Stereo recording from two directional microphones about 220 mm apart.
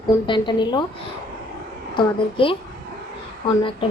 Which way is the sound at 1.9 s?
25° left (ahead or behind).